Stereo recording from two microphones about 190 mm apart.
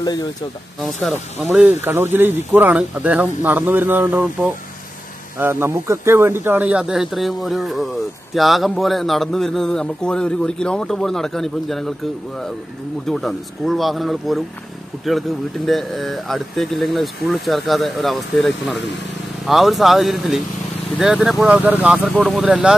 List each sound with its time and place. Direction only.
0.0 s speech: 20° left (ahead or behind)
1.0 s a man's voice: centre (ahead or behind)
13.1 s a man's voice: centre (ahead or behind)